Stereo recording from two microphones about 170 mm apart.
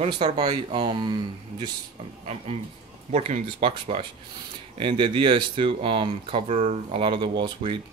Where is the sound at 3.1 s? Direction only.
40° right (ahead or behind).